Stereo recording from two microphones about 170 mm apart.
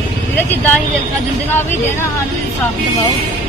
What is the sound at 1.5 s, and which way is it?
Speech, 15° left (ahead or behind).